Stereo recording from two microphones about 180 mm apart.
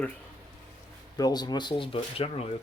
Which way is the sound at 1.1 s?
20° left (ahead or behind).